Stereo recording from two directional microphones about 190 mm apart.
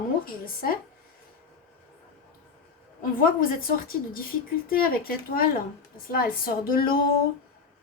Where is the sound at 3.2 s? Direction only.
50° left (ahead or behind).